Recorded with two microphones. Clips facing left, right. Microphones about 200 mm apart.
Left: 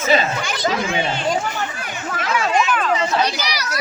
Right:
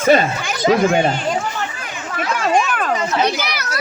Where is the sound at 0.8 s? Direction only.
50° right (ahead or behind).